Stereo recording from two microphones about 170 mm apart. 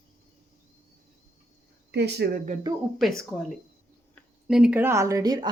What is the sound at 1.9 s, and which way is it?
Speech, 80° right.